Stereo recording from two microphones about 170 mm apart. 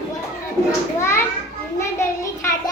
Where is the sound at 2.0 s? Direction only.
15° left (ahead or behind).